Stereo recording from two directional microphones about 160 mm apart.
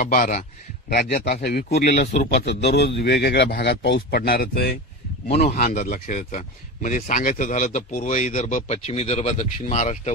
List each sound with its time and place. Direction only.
0.0 s speech: 50° left (ahead or behind)
0.8 s a man's voice: 60° left (ahead or behind)
1.8 s speech: 90° left; by 10.1 s 45° left (ahead or behind)